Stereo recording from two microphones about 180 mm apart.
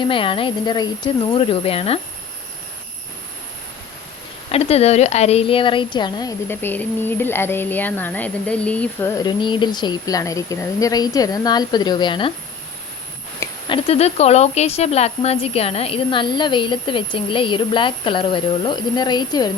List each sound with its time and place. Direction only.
0.0 s a woman's voice: 30° left (ahead or behind)
4.5 s a woman's voice: 35° left (ahead or behind)
6.5 s speech: 10° left (ahead or behind)
13.7 s a woman's voice: 35° left (ahead or behind)